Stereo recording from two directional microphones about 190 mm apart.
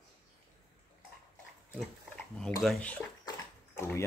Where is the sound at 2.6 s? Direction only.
5° left (ahead or behind).